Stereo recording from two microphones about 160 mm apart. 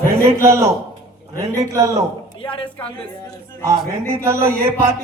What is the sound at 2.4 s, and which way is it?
Speech, 35° left (ahead or behind).